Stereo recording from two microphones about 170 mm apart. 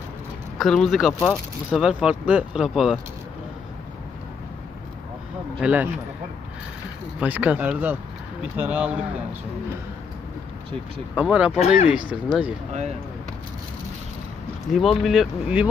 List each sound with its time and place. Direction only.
0.6 s speech: centre (ahead or behind)
5.6 s speech: 10° right (ahead or behind)
7.2 s speech: 10° right (ahead or behind)
11.1 s speech: 5° right (ahead or behind)
11.6 s speech: 35° left (ahead or behind)
14.7 s speech: centre (ahead or behind)